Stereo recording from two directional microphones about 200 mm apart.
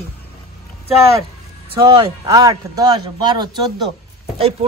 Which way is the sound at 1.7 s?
25° right (ahead or behind).